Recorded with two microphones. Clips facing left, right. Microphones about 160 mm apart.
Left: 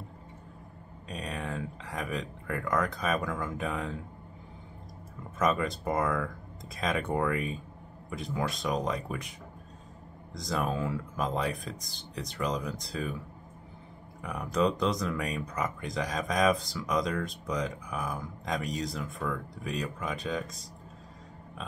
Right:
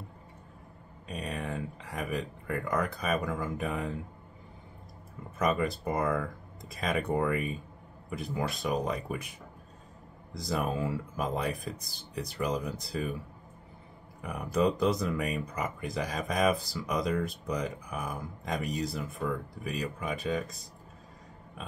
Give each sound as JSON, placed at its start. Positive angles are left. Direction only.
{"t": 1.0, "sound": "speech", "side_deg": 0}
{"t": 5.4, "sound": "speech", "side_deg": 0}
{"t": 10.3, "sound": "speech", "side_deg": -5}
{"t": 14.2, "sound": "speech", "side_deg": -5}